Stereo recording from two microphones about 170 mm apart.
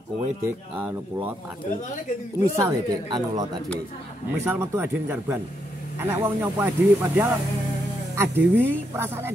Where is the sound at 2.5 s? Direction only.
20° right (ahead or behind).